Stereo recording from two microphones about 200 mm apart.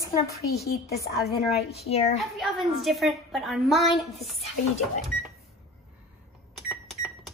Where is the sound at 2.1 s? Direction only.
Centre (ahead or behind).